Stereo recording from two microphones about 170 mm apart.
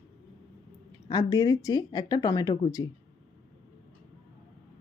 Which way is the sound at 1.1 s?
20° left (ahead or behind).